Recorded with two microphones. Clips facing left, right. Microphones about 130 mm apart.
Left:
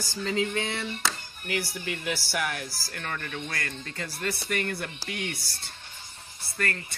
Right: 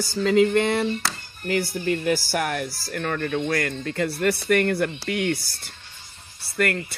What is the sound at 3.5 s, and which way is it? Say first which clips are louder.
Speech: right 11 dB; 55° right (ahead or behind).